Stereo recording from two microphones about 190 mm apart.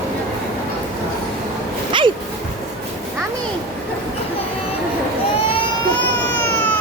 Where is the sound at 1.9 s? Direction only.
25° right (ahead or behind).